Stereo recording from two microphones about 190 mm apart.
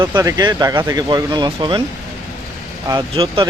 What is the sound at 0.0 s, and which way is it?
Speech, 20° right (ahead or behind).